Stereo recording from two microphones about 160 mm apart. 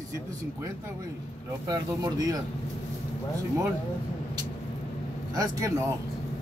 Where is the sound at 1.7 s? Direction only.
20° right (ahead or behind).